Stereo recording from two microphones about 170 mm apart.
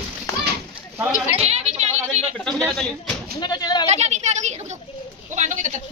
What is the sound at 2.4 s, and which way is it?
Speech, 5° left (ahead or behind).